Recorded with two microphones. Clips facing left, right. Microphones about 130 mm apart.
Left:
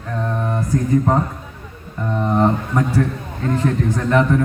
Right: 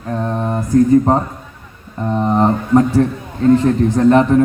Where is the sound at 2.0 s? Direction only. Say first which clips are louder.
Right 3 dB; 30° right (ahead or behind).